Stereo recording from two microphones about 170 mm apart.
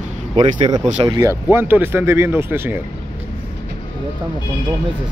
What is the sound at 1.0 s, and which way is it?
Speech, 25° right (ahead or behind).